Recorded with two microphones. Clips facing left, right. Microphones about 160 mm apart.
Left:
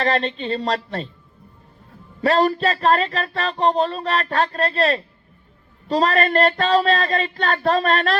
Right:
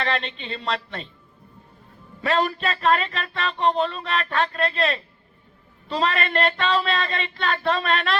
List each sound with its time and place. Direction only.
0.0 s speech: 40° left (ahead or behind)
2.2 s speech: 40° left (ahead or behind)